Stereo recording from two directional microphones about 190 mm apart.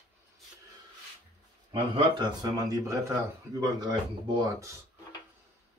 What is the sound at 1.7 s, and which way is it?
Speech, 25° right (ahead or behind).